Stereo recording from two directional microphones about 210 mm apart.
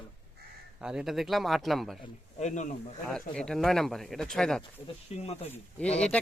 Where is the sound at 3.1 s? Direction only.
5° left (ahead or behind).